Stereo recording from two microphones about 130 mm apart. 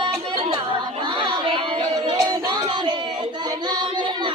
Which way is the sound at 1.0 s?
40° right (ahead or behind).